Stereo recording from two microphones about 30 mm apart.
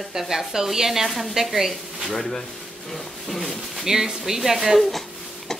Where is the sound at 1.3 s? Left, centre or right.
Centre.